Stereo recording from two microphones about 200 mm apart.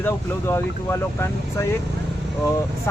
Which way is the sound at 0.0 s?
10° left (ahead or behind).